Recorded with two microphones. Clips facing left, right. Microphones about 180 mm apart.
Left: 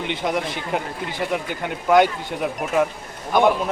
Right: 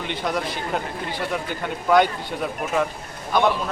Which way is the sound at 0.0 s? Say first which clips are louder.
Left 2 dB; 20° left (ahead or behind).